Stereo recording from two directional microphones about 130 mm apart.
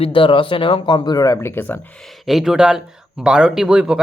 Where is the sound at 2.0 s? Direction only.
Centre (ahead or behind).